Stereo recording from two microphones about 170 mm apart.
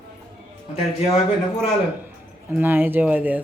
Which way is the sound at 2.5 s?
10° right (ahead or behind).